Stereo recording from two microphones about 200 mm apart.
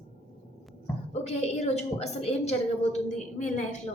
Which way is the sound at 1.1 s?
30° left (ahead or behind).